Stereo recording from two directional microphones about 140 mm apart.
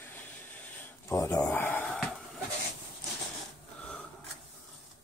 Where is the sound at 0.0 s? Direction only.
15° left (ahead or behind).